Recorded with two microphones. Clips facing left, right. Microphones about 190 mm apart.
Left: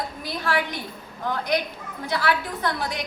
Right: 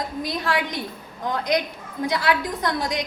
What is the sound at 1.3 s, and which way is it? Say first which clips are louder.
A woman's voice: right 2 dB; 15° right (ahead or behind).